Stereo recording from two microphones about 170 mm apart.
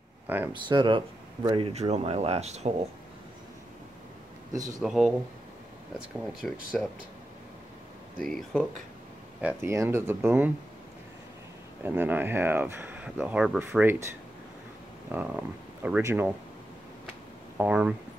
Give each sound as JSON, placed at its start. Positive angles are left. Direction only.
{"t": 0.3, "sound": "speech", "side_deg": -10}
{"t": 0.7, "sound": "speech", "side_deg": -30}
{"t": 4.5, "sound": "a man's voice", "side_deg": -20}
{"t": 4.8, "sound": "speech", "side_deg": -5}
{"t": 6.4, "sound": "speech", "side_deg": 5}
{"t": 8.3, "sound": "speech", "side_deg": 5}
{"t": 9.4, "sound": "speech", "side_deg": -10}
{"t": 11.8, "sound": "speech", "side_deg": -10}
{"t": 15.0, "sound": "speech", "side_deg": -10}
{"t": 17.6, "sound": "speech", "side_deg": -5}